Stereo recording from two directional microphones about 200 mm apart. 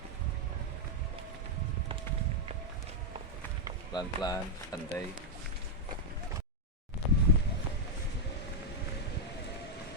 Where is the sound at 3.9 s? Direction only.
20° left (ahead or behind).